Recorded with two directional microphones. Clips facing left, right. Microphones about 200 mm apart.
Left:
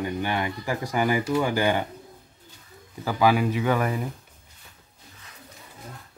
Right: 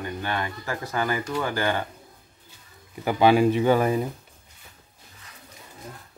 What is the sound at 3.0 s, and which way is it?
Speech, 25° right (ahead or behind).